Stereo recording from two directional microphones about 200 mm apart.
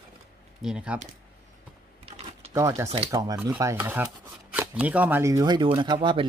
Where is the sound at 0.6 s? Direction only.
5° right (ahead or behind).